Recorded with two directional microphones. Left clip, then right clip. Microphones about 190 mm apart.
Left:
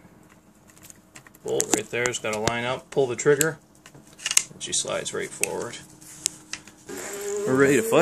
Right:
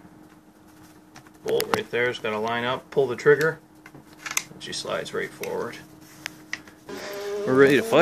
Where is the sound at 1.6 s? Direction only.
45° left (ahead or behind).